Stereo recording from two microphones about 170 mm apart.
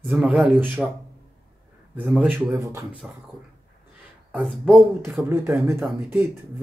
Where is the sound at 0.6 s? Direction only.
10° right (ahead or behind).